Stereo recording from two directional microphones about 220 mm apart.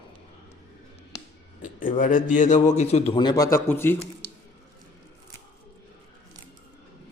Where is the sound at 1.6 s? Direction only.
35° left (ahead or behind); by 3.9 s 10° left (ahead or behind).